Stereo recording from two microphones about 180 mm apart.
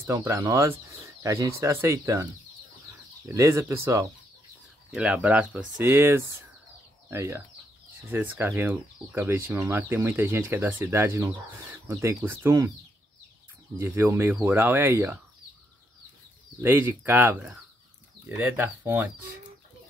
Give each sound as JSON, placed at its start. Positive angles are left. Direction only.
{"t": 0.0, "sound": "speech", "side_deg": -15}
{"t": 3.3, "sound": "speech", "side_deg": -15}
{"t": 13.7, "sound": "speech", "side_deg": -15}
{"t": 16.6, "sound": "speech", "side_deg": -10}